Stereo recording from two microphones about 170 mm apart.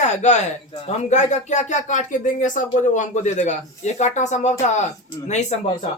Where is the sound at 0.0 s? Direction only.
45° left (ahead or behind).